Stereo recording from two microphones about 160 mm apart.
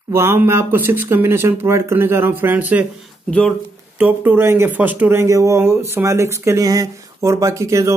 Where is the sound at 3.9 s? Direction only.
10° right (ahead or behind).